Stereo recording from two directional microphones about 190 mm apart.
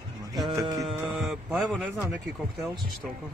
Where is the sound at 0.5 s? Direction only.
15° right (ahead or behind).